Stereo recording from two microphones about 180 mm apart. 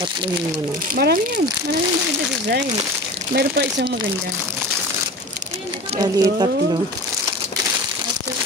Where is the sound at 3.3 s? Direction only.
65° right (ahead or behind).